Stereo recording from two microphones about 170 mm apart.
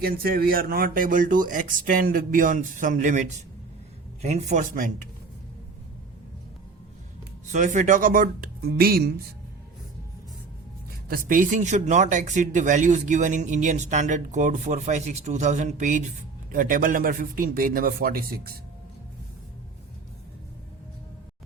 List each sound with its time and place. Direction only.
0.0 s speech: 60° right (ahead or behind)
7.4 s a man's voice: 45° right (ahead or behind); by 9.2 s 65° right (ahead or behind)
11.1 s a man's voice: 55° right (ahead or behind)